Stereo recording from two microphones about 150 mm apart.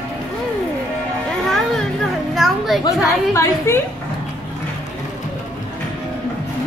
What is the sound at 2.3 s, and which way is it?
Children playing, centre (ahead or behind).